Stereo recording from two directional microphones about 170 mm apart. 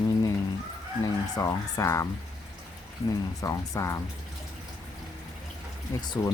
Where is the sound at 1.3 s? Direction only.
20° left (ahead or behind).